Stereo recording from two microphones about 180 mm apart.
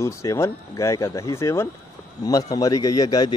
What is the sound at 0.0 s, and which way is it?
Speech, 15° left (ahead or behind).